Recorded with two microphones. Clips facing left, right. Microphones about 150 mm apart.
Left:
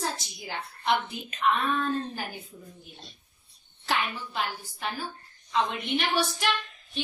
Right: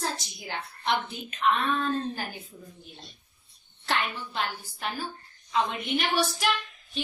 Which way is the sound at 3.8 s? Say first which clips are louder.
Even; 5° left (ahead or behind).